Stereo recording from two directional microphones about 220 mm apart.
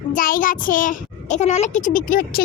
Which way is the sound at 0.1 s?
40° left (ahead or behind).